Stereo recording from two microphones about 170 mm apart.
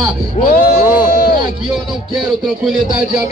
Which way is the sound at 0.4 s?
60° left (ahead or behind).